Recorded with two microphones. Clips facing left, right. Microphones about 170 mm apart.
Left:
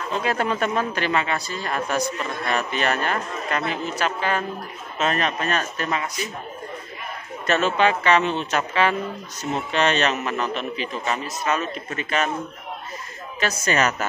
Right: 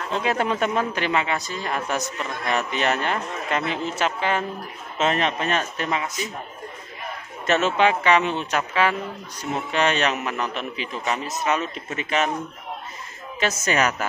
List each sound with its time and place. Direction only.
0.2 s a man's voice: 20° right (ahead or behind)
7.4 s a man's voice: 20° right (ahead or behind)
13.4 s a man's voice: 15° right (ahead or behind)